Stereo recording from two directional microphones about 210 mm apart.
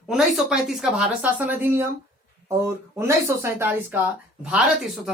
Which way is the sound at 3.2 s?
15° right (ahead or behind).